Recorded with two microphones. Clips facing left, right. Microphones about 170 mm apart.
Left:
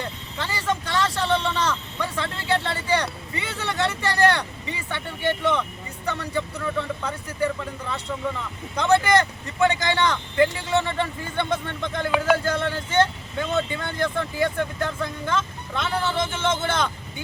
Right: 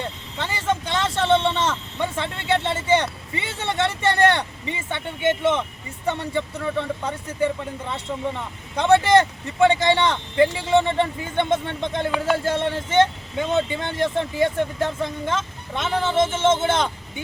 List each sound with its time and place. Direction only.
0.0 s speech: 20° right (ahead or behind)